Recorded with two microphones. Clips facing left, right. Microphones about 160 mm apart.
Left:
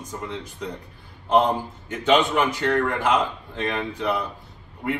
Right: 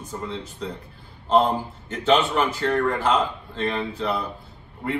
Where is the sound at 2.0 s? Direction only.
15° left (ahead or behind).